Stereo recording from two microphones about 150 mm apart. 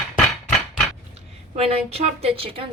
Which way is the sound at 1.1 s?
40° right (ahead or behind).